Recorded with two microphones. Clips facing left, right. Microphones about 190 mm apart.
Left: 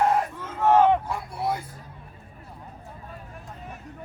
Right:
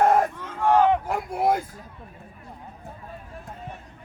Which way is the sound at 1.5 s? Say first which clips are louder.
Right 6 dB; 90° right.